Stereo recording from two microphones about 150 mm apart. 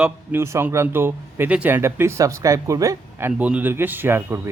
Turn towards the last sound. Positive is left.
turn(degrees=-15)  # may be behind; listen again after turning